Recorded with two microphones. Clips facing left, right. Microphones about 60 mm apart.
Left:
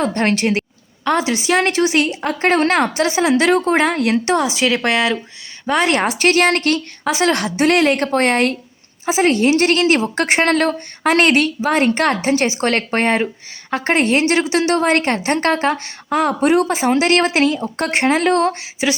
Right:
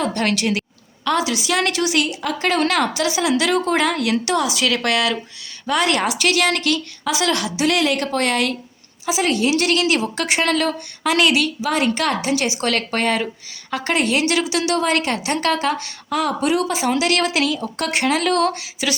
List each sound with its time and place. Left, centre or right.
0.0 s a woman's voice: left